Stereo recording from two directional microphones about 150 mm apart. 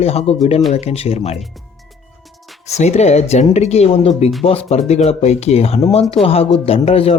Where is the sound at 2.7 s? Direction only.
45° left (ahead or behind).